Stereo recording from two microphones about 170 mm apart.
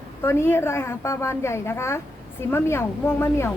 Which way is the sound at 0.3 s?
15° left (ahead or behind).